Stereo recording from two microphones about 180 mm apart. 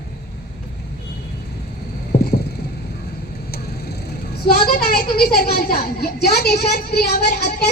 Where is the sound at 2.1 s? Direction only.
65° left (ahead or behind).